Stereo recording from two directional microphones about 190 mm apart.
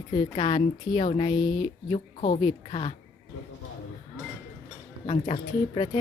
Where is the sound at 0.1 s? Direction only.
25° left (ahead or behind).